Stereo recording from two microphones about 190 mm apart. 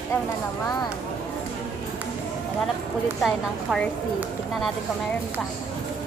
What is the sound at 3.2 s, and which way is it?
A woman's voice, centre (ahead or behind).